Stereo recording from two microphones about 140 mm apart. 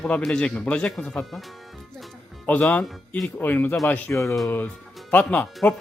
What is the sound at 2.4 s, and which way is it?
Speech, 10° left (ahead or behind).